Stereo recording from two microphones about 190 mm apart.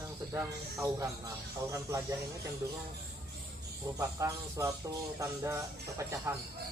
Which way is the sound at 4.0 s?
15° right (ahead or behind).